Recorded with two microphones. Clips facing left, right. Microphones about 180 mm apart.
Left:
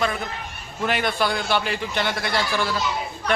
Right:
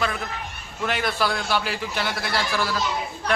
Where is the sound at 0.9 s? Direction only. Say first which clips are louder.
Left 2 dB; centre (ahead or behind).